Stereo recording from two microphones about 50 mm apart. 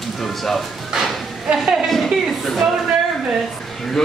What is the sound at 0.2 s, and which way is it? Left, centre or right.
Speech, centre.